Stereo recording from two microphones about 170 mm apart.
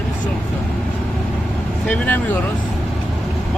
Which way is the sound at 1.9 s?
10° left (ahead or behind).